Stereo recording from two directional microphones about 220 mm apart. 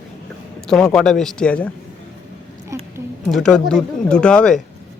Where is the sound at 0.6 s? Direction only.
Centre (ahead or behind).